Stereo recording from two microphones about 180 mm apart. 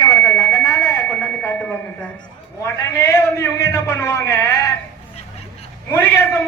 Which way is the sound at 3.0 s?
15° left (ahead or behind).